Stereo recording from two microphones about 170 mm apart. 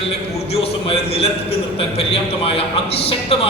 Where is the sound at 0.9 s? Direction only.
35° left (ahead or behind).